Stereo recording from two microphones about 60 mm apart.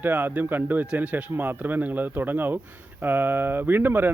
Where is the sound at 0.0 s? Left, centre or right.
Right.